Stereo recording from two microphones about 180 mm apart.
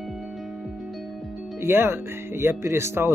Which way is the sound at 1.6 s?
10° right (ahead or behind).